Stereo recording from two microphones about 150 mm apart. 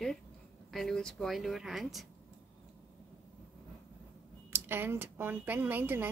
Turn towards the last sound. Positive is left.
turn(degrees=-15)  # may be behind; listen again after turning